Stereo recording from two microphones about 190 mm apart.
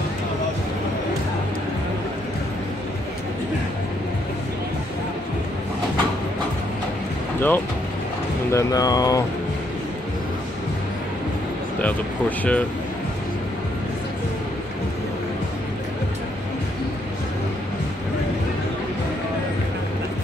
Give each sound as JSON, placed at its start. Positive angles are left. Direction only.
{"t": 7.3, "sound": "speech", "side_deg": 10}
{"t": 11.8, "sound": "speech", "side_deg": 5}